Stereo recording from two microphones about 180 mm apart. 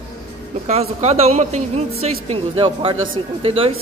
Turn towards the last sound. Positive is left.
turn(degrees=-30)  # may be behind; listen again after turning